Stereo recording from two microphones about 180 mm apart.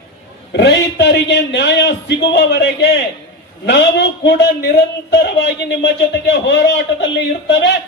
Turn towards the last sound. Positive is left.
turn(degrees=80)